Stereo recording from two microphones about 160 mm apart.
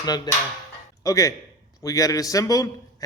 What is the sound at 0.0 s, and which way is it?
A man's voice, 25° left (ahead or behind).